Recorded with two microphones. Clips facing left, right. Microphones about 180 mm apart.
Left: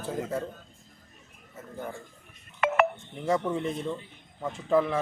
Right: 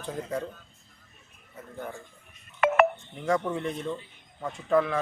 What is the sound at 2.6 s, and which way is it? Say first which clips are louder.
Telephone dialing: right 3 dB; 55° right (ahead or behind).